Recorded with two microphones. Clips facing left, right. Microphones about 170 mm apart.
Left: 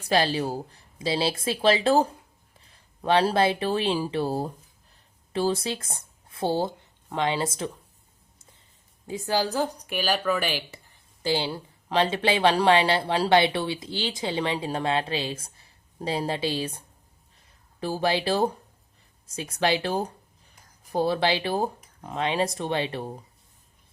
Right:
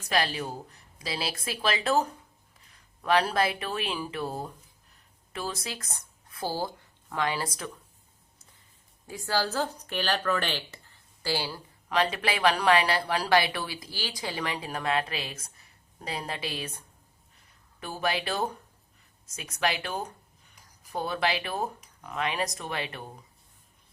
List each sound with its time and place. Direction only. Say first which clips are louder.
0.0 s speech: left 5 dB; 30° left (ahead or behind)
9.0 s speech: left 3 dB; 20° left (ahead or behind)